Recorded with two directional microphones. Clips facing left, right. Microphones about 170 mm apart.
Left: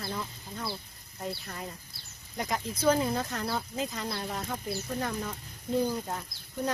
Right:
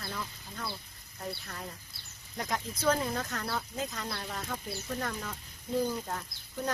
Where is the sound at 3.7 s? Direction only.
5° left (ahead or behind).